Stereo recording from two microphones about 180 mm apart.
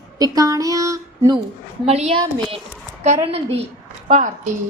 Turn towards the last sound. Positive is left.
turn(degrees=-45)  # may be behind; listen again after turning